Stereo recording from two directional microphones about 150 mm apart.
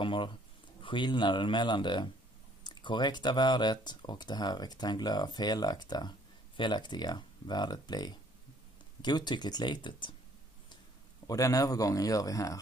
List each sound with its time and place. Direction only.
0.0 s a sound: 35° left (ahead or behind)
0.8 s speech: 30° left (ahead or behind)
11.2 s speech: 25° left (ahead or behind)